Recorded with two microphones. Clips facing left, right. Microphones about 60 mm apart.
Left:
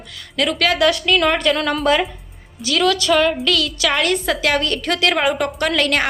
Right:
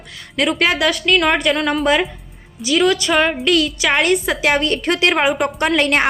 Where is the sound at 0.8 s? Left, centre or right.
Centre.